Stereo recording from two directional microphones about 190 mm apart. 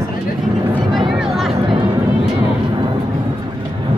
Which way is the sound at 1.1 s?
Centre (ahead or behind).